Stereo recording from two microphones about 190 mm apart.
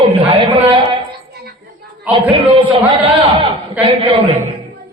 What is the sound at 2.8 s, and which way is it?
Speech, 10° right (ahead or behind).